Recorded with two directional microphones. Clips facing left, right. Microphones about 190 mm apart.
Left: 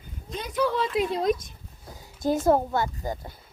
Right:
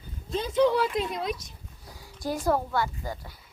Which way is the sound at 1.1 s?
45° left (ahead or behind).